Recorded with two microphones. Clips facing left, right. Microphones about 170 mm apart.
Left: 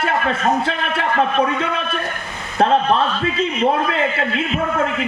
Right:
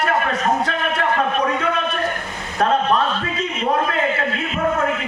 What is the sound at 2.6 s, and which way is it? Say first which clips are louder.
Speech: left 2 dB; 30° left (ahead or behind).